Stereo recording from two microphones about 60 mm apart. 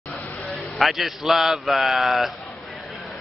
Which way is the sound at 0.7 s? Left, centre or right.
Centre.